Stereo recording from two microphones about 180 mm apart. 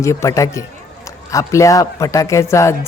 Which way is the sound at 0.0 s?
15° left (ahead or behind).